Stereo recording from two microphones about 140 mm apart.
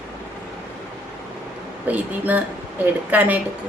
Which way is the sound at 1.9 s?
10° right (ahead or behind).